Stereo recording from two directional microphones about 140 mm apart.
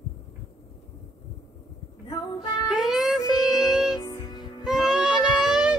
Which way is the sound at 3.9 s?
30° left (ahead or behind).